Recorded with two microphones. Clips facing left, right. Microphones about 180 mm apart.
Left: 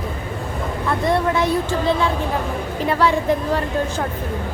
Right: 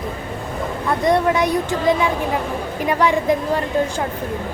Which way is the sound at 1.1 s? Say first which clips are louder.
Right 2 dB; 15° right (ahead or behind).